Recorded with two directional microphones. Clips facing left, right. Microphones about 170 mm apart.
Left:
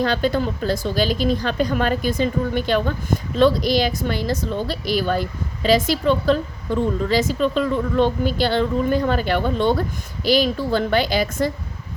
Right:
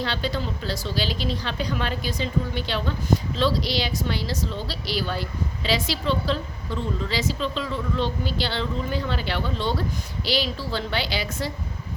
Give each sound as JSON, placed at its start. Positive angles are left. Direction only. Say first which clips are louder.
{"t": 0.0, "sound": "a woman's voice", "louder": "left 8 dB", "side_deg": 50}